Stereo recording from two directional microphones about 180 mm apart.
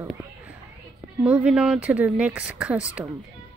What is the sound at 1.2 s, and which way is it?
Speech, 5° right (ahead or behind).